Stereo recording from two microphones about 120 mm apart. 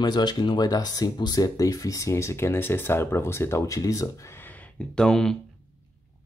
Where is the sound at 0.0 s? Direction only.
35° left (ahead or behind); by 5.4 s 5° left (ahead or behind).